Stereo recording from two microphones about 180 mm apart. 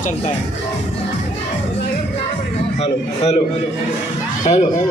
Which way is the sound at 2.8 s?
35° left (ahead or behind).